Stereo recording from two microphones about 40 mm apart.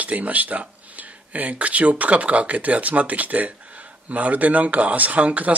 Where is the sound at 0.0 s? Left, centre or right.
Right.